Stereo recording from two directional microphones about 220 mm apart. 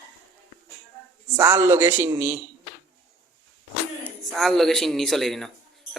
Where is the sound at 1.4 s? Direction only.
10° right (ahead or behind).